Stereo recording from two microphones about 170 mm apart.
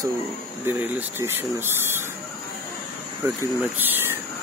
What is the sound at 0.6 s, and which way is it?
Speech, 15° right (ahead or behind).